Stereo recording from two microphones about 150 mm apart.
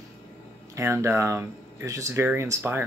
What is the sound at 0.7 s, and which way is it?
Speech, 20° right (ahead or behind).